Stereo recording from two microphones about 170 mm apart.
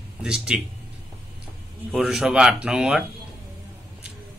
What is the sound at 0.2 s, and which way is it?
Speech, 5° right (ahead or behind).